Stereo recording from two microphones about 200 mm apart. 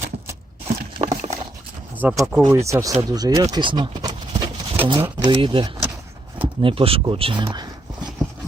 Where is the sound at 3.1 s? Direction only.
20° right (ahead or behind).